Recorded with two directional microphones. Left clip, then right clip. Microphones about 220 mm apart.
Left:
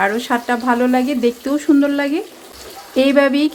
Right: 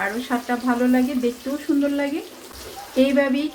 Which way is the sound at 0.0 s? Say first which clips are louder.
Left 7 dB; 45° left (ahead or behind).